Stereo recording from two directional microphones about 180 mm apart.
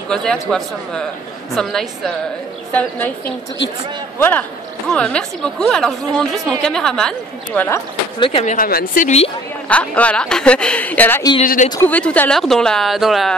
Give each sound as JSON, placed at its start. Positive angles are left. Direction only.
{"t": 0.1, "sound": "speech", "side_deg": 5}
{"t": 4.2, "sound": "a woman's voice", "side_deg": 10}
{"t": 8.2, "sound": "speech", "side_deg": 30}
{"t": 8.5, "sound": "a woman's voice", "side_deg": 50}
{"t": 9.7, "sound": "a woman's voice", "side_deg": 5}
{"t": 11.4, "sound": "a woman's voice", "side_deg": 50}
{"t": 11.7, "sound": "speech", "side_deg": 10}